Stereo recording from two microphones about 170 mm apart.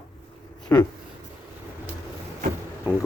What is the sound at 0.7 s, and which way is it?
Speech, 15° left (ahead or behind).